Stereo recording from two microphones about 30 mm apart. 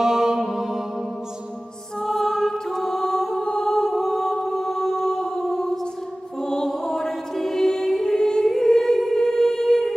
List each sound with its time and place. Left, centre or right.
0.0 s music: centre
2.0 s music: centre
8.5 s humming: centre